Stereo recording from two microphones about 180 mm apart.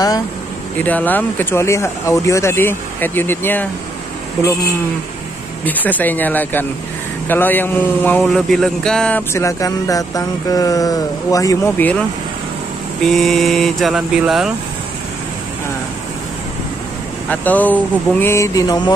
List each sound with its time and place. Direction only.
0.8 s a man's voice: 10° left (ahead or behind)
5.7 s a man's voice: 10° left (ahead or behind)
13.0 s speech: centre (ahead or behind)
17.3 s a man's voice: 10° left (ahead or behind)
18.2 s mantra: 15° left (ahead or behind)